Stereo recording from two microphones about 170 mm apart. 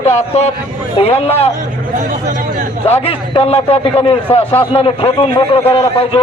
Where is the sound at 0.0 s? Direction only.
40° left (ahead or behind).